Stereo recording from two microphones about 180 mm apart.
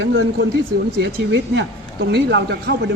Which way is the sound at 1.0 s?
70° right (ahead or behind).